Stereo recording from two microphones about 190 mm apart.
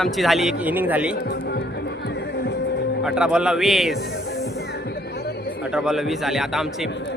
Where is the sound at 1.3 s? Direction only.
60° left (ahead or behind).